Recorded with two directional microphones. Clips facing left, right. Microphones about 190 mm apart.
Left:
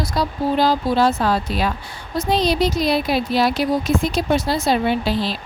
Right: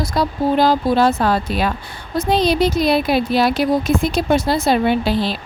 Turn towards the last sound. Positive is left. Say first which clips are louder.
# right 3 dB
turn(degrees=-55)  # may be behind; listen again after turning